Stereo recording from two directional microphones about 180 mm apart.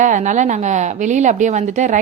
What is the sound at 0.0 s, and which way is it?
A woman's voice, 45° right (ahead or behind).